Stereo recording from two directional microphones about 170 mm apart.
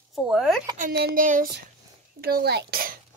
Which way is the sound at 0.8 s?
60° right (ahead or behind).